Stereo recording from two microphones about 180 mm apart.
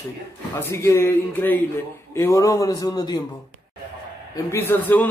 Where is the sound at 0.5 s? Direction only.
15° left (ahead or behind).